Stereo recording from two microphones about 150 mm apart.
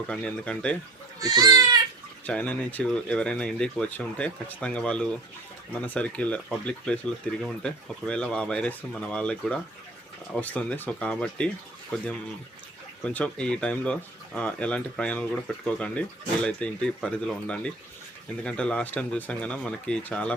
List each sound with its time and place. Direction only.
0.1 s speech: 5° left (ahead or behind)
1.2 s speech: 25° right (ahead or behind)
2.2 s speech: 10° left (ahead or behind)